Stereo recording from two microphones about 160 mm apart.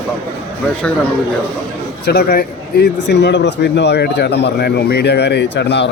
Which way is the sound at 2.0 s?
85° left.